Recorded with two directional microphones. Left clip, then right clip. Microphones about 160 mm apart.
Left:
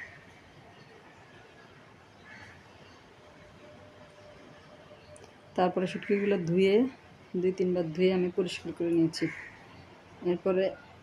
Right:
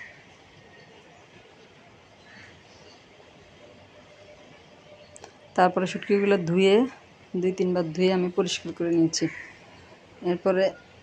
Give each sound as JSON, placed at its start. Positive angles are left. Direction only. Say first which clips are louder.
{"t": 5.5, "sound": "speech", "louder": "right 7 dB", "side_deg": -15}
{"t": 9.2, "sound": "speech", "louder": "right 4 dB", "side_deg": -5}